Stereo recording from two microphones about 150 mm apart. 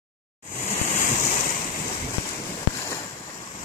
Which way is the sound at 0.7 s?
60° left (ahead or behind).